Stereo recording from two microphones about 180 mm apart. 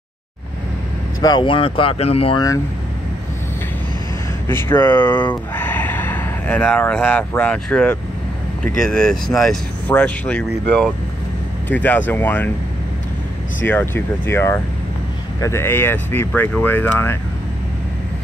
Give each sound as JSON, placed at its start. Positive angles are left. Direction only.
{"t": 1.2, "sound": "speech", "side_deg": 25}
{"t": 4.6, "sound": "speech", "side_deg": 10}
{"t": 11.7, "sound": "speech", "side_deg": 10}
{"t": 13.6, "sound": "speech", "side_deg": 10}